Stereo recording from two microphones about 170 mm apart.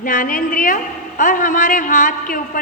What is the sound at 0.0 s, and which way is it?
A man's voice, 50° left (ahead or behind).